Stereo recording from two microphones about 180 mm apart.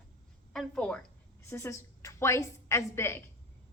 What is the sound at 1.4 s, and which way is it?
A woman's voice, 15° left (ahead or behind).